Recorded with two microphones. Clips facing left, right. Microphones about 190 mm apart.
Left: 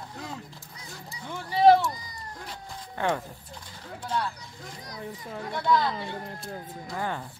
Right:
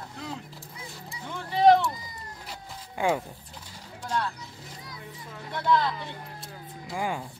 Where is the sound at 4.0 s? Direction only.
5° left (ahead or behind).